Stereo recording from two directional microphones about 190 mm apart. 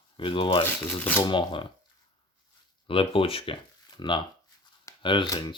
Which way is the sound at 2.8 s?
30° left (ahead or behind).